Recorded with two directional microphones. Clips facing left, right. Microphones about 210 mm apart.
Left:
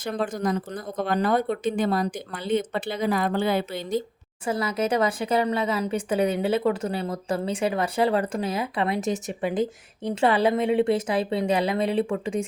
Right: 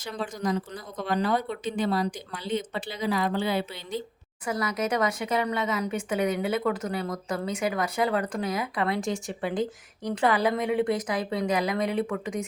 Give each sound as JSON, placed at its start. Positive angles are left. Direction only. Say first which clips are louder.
{"t": 0.0, "sound": "speech", "louder": "left 4 dB", "side_deg": 55}
{"t": 4.4, "sound": "speech", "louder": "left 3 dB", "side_deg": 30}